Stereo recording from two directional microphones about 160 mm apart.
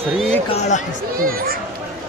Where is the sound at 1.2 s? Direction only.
65° right (ahead or behind).